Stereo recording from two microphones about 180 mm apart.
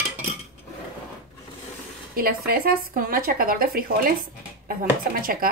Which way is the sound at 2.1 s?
55° right (ahead or behind).